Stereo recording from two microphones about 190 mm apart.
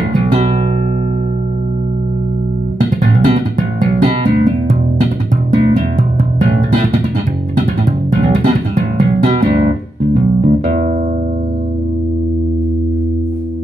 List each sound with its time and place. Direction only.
0.1 s music: 35° right (ahead or behind)
3.0 s music: 40° right (ahead or behind)
6.4 s music: 40° right (ahead or behind)
8.1 s music: 35° right (ahead or behind)